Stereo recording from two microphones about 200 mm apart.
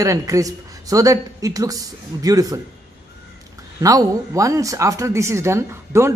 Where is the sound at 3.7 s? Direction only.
15° right (ahead or behind).